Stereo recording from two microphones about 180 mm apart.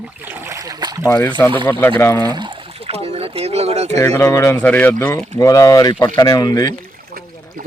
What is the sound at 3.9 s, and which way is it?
Speech, 15° left (ahead or behind).